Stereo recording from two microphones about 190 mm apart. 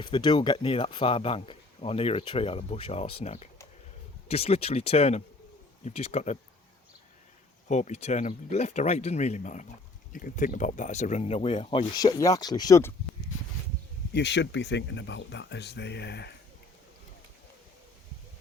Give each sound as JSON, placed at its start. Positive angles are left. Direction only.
{"t": 0.0, "sound": "speech", "side_deg": 25}
{"t": 7.7, "sound": "speech", "side_deg": 40}
{"t": 14.1, "sound": "speech", "side_deg": 65}